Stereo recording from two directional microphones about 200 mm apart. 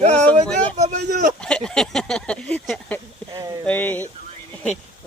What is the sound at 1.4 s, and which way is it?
Speech, 5° left (ahead or behind).